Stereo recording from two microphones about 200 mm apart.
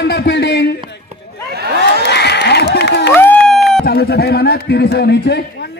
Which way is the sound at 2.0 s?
55° left (ahead or behind).